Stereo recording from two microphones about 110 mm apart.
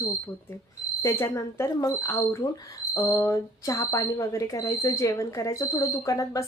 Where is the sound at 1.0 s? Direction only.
25° left (ahead or behind).